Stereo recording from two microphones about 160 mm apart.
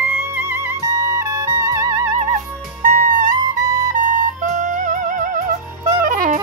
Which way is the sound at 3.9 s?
55° right (ahead or behind).